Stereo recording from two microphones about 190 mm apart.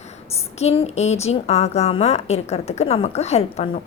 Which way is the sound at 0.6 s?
35° left (ahead or behind).